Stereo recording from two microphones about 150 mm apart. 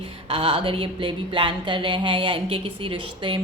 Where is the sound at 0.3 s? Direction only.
40° right (ahead or behind).